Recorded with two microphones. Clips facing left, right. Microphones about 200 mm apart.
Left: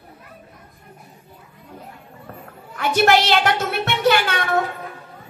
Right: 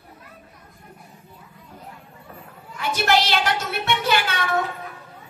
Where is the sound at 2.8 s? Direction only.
55° left (ahead or behind).